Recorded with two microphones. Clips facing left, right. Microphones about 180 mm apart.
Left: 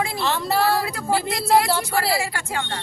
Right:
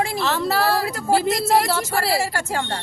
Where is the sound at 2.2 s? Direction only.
40° right (ahead or behind).